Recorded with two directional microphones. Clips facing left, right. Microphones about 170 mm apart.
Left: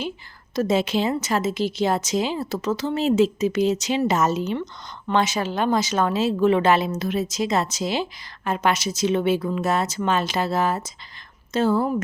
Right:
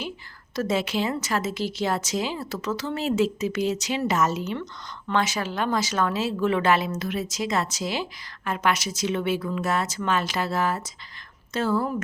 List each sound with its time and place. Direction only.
0.5 s a woman's voice: 20° left (ahead or behind)